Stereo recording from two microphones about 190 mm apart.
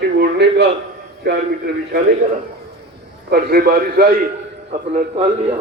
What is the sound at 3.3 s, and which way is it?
Speech, 55° right (ahead or behind).